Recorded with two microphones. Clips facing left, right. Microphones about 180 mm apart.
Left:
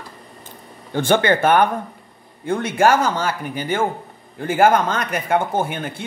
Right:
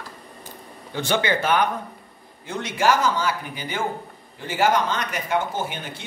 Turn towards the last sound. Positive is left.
turn(degrees=55)  # may be behind; listen again after turning